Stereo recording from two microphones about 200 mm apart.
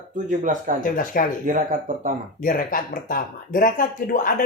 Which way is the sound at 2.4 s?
45° left (ahead or behind).